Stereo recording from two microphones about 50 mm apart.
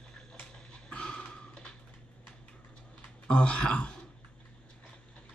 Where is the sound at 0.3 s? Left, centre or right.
Centre.